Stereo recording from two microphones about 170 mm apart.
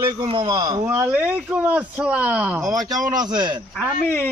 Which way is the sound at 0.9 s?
10° right (ahead or behind).